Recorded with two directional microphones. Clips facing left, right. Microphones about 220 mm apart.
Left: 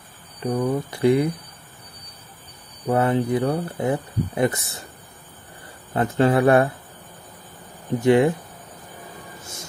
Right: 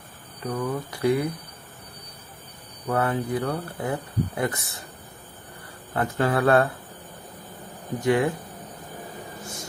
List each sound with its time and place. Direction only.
0.4 s speech: 20° left (ahead or behind)
2.9 s speech: 20° left (ahead or behind)
5.9 s speech: 25° left (ahead or behind)
8.0 s speech: 25° left (ahead or behind)